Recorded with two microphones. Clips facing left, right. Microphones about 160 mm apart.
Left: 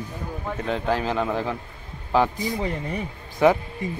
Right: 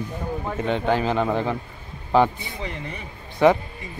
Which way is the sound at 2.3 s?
40° left (ahead or behind).